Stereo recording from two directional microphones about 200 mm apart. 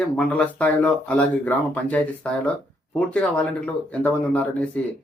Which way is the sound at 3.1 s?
5° left (ahead or behind).